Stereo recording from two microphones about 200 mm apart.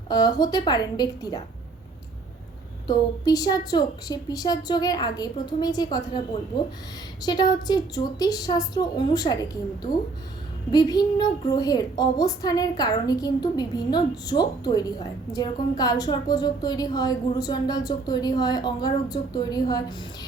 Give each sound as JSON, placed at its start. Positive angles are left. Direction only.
{"t": 0.1, "sound": "a woman's voice", "side_deg": 20}
{"t": 2.8, "sound": "a woman's voice", "side_deg": 20}